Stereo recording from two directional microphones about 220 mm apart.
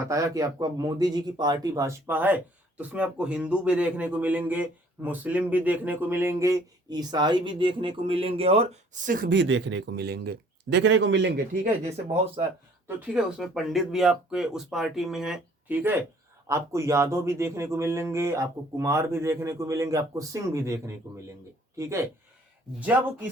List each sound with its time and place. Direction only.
0.1 s speech: 15° right (ahead or behind); by 11.3 s 55° right (ahead or behind)
12.1 s speech: 25° right (ahead or behind)
13.1 s speech: centre (ahead or behind)